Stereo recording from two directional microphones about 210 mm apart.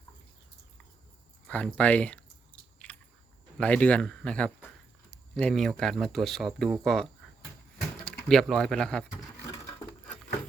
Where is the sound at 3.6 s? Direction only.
5° left (ahead or behind).